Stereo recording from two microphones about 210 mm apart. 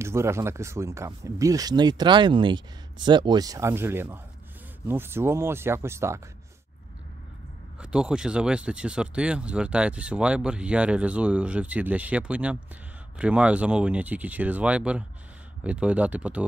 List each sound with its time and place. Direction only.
0.0 s speech: 15° right (ahead or behind)
7.8 s speech: 5° right (ahead or behind)